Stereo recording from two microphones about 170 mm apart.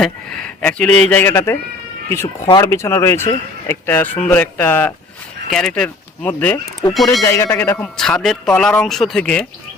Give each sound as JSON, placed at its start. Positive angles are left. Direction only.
{"t": 0.6, "sound": "speech", "side_deg": 5}
{"t": 7.3, "sound": "speech", "side_deg": 15}